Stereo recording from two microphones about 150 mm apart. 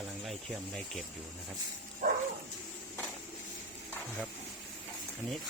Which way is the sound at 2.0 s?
65° right (ahead or behind).